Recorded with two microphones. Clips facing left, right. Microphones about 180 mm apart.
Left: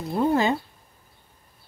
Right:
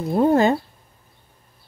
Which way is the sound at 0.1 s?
50° right (ahead or behind).